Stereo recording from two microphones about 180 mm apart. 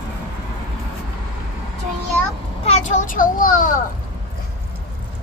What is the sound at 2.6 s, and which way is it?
A child's voice, 40° left (ahead or behind).